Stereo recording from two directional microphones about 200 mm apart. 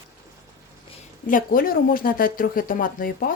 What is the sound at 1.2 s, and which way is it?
Speech, 45° left (ahead or behind).